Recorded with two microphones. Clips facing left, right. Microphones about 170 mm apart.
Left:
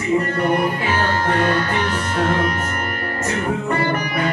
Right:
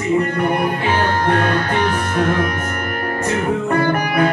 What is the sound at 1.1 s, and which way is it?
Music, 60° right (ahead or behind).